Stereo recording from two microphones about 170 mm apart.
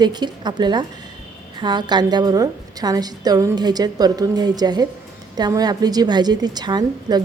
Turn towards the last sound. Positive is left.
turn(degrees=-25)  # may be behind; listen again after turning